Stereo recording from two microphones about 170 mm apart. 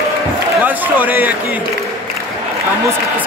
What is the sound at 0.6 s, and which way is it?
Speech, 10° right (ahead or behind).